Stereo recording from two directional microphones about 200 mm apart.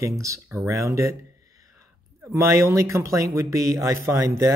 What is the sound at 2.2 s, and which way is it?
Speech, 15° right (ahead or behind).